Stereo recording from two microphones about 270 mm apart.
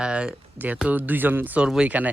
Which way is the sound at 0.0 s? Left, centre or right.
Centre.